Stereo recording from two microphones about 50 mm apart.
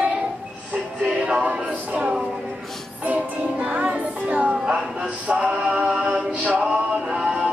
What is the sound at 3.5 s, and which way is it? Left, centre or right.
Music, right.